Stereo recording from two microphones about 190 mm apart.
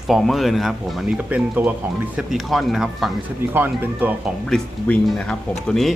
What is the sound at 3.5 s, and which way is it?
Speech, 10° right (ahead or behind).